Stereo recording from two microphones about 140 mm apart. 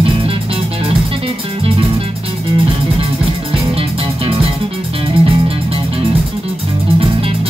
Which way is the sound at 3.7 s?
45° right (ahead or behind).